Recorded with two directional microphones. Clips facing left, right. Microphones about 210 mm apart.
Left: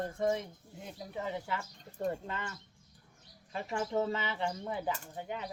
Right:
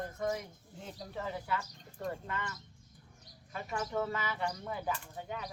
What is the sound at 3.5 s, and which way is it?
Speech, 25° left (ahead or behind).